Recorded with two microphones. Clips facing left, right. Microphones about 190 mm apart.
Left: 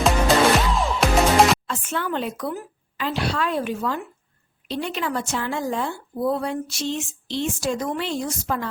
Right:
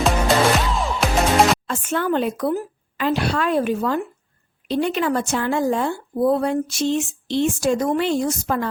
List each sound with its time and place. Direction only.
0.0 s music: centre (ahead or behind)
1.6 s speech: 45° right (ahead or behind)